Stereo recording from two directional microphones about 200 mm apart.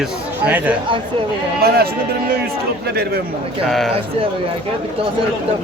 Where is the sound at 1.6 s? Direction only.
50° right (ahead or behind).